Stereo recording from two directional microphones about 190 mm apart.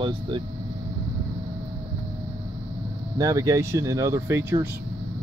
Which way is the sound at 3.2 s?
15° right (ahead or behind).